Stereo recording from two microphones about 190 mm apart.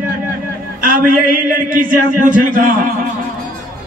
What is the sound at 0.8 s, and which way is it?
A man's voice, 50° right (ahead or behind).